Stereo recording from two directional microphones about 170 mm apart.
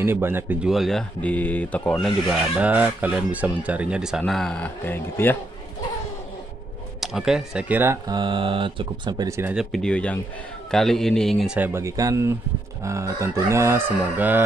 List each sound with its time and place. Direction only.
0.0 s speech: 15° right (ahead or behind); by 5.4 s 10° left (ahead or behind)
7.0 s speech: centre (ahead or behind)
8.1 s speech: 25° right (ahead or behind)
9.6 s speech: 5° left (ahead or behind)